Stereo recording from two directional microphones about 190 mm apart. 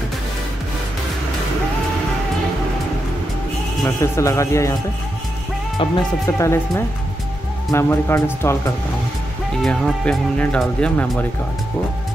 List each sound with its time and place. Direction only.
3.8 s speech: 15° left (ahead or behind)
5.8 s speech: 15° left (ahead or behind)
9.6 s speech: 5° left (ahead or behind)